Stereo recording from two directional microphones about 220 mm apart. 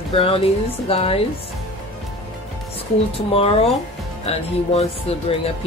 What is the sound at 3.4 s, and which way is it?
Speech, 25° left (ahead or behind).